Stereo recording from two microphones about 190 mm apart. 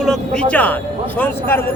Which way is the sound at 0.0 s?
5° left (ahead or behind).